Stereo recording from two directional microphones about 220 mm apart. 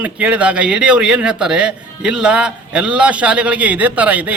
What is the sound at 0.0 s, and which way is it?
A man's voice, 5° right (ahead or behind).